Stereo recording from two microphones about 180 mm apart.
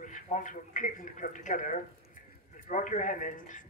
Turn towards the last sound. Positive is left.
turn(degrees=45)  # may be behind; listen again after turning